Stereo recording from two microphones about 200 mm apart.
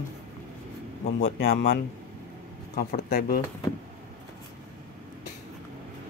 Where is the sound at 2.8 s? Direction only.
40° left (ahead or behind).